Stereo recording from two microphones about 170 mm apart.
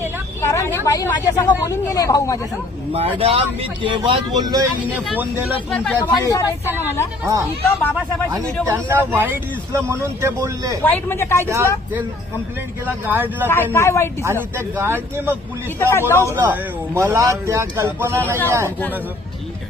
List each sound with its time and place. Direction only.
0.4 s a sound: 15° left (ahead or behind)
0.9 s speech: 20° left (ahead or behind)
3.2 s speech: 35° right (ahead or behind)
5.1 s speech: 10° right (ahead or behind)
5.7 s speech: 5° left (ahead or behind)
6.0 s speech: 20° left (ahead or behind)
8.3 s speech: 15° right (ahead or behind)
10.8 s speech: 10° left (ahead or behind)
11.4 s speech: 15° right (ahead or behind)
12.8 s speech: 10° right (ahead or behind)
13.7 s speech: 15° left (ahead or behind)
14.5 s speech: 15° right (ahead or behind)
15.8 s speech: 15° left (ahead or behind)
16.2 s speech: 15° right (ahead or behind)